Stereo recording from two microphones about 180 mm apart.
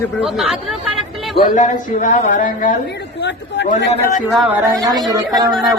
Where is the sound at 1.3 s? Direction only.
45° left (ahead or behind).